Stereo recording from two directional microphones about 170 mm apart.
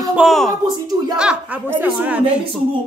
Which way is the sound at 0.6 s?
25° right (ahead or behind).